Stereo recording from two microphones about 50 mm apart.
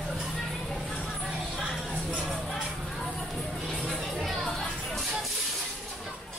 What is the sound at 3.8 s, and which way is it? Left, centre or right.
Music, centre.